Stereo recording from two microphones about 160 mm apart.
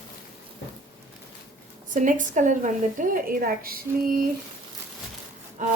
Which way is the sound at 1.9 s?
55° right (ahead or behind).